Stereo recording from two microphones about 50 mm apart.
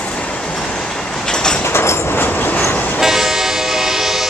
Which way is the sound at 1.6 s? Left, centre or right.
Left.